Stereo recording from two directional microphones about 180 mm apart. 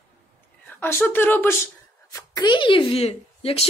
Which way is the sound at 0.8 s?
10° left (ahead or behind).